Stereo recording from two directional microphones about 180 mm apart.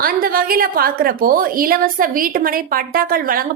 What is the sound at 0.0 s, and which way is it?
A woman's voice, 55° right (ahead or behind).